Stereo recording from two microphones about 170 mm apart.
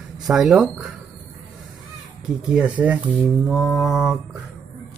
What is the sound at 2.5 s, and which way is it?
Speech, 10° right (ahead or behind).